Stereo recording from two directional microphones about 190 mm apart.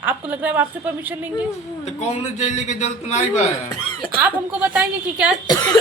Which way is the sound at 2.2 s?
40° left (ahead or behind).